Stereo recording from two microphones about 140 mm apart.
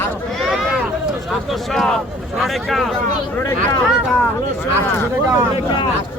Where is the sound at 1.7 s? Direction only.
5° left (ahead or behind).